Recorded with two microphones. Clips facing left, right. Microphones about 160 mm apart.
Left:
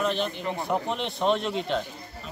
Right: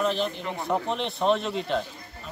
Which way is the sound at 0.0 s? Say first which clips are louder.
Right 1 dB; centre (ahead or behind).